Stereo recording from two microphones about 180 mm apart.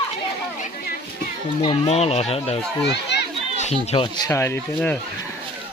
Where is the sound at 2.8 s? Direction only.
70° left (ahead or behind).